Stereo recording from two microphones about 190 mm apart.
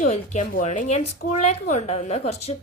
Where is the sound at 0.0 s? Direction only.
40° left (ahead or behind).